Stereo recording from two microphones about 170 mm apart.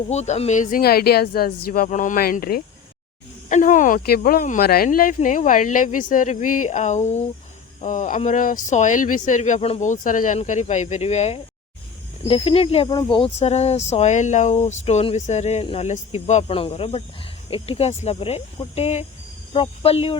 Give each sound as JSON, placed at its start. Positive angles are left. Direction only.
{"t": 0.1, "sound": "speech", "side_deg": 40}
{"t": 3.5, "sound": "speech", "side_deg": 50}